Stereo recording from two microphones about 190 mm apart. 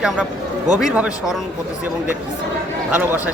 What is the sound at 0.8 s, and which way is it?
Speech, 5° right (ahead or behind).